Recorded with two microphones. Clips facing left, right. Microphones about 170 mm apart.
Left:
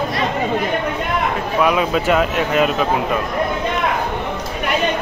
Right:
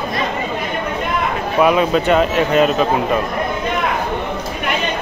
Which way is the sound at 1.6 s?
Centre (ahead or behind).